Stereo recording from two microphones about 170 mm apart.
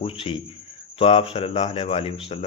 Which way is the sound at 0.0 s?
35° left (ahead or behind).